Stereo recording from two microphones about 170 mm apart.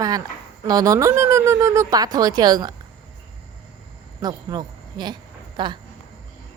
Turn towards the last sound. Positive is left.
turn(degrees=-25)  # may be behind; listen again after turning